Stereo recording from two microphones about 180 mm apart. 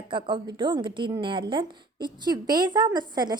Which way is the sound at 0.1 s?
25° right (ahead or behind).